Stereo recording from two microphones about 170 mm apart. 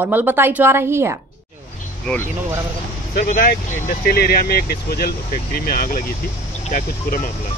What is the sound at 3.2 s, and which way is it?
Speech, 55° left (ahead or behind).